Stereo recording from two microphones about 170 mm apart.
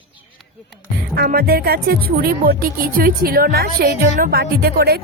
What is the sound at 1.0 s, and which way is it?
Speech, 70° right (ahead or behind).